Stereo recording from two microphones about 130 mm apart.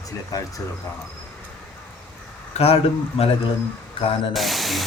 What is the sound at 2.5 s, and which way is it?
Speech, 50° left (ahead or behind).